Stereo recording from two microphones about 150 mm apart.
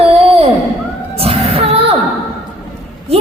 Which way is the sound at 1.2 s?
40° right (ahead or behind).